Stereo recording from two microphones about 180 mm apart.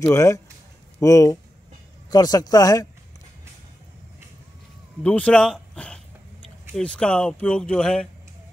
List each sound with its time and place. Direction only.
0.1 s speech: 15° left (ahead or behind)
5.0 s speech: 5° left (ahead or behind)